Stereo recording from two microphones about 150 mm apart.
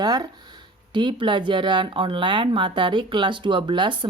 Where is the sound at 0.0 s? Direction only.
25° right (ahead or behind).